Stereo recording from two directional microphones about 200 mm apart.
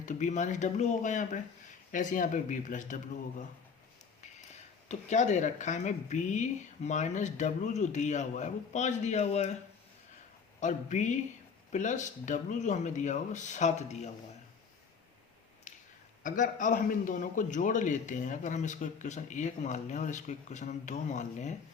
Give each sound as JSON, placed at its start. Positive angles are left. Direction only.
{"t": 0.0, "sound": "a man's voice", "side_deg": 40}
{"t": 4.9, "sound": "a man's voice", "side_deg": 35}
{"t": 10.6, "sound": "a man's voice", "side_deg": 35}
{"t": 15.7, "sound": "a sound", "side_deg": 35}
{"t": 16.2, "sound": "a man's voice", "side_deg": 40}